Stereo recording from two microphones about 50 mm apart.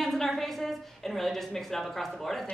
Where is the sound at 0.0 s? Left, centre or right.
Centre.